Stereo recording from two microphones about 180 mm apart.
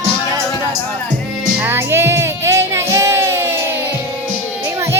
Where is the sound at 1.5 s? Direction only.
15° right (ahead or behind).